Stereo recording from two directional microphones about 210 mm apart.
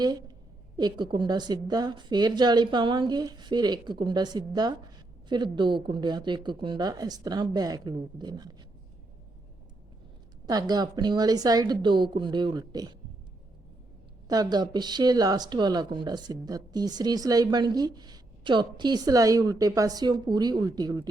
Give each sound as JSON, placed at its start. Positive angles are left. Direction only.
{"t": 0.0, "sound": "speech", "side_deg": -20}
{"t": 10.4, "sound": "speech", "side_deg": -20}
{"t": 14.3, "sound": "speech", "side_deg": -20}